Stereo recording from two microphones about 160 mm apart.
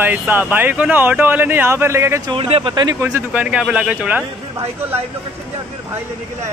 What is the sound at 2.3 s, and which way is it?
Speech, 35° right (ahead or behind).